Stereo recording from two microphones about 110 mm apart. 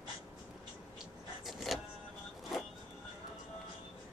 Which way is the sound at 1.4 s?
Centre (ahead or behind).